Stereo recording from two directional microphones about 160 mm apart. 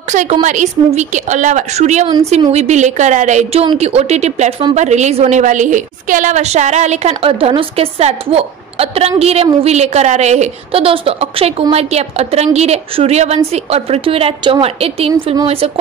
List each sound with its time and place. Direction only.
0.1 s a woman's voice: 50° right (ahead or behind)